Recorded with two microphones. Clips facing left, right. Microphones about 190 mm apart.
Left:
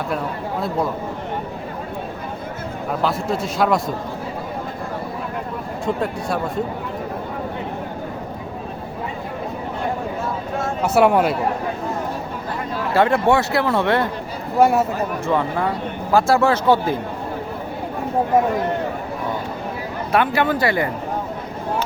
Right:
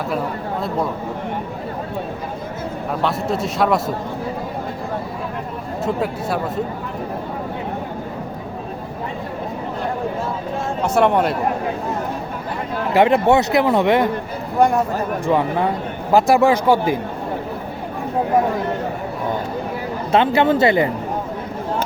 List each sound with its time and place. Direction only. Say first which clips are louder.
3.0 s speech: right 1 dB; centre (ahead or behind)
5.8 s speech: right 1 dB; 5° right (ahead or behind)
10.8 s speech: left 1 dB; 5° left (ahead or behind)
12.9 s a man's voice: right 2 dB; 20° right (ahead or behind)
14.6 s speech: left 1 dB; 5° left (ahead or behind)
15.3 s a man's voice: right 3 dB; 20° right (ahead or behind)
20.1 s speech: right 4 dB; 25° right (ahead or behind)